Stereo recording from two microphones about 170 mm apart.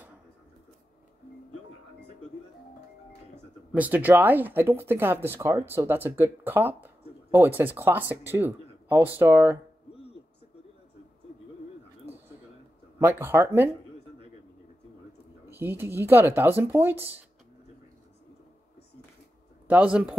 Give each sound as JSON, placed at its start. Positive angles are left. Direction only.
{"t": 3.7, "sound": "speech", "side_deg": -10}
{"t": 13.0, "sound": "speech", "side_deg": -10}
{"t": 15.5, "sound": "a woman's voice", "side_deg": -10}
{"t": 19.7, "sound": "speech", "side_deg": -10}